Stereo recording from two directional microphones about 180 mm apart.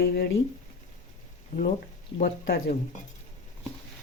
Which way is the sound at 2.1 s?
55° left (ahead or behind).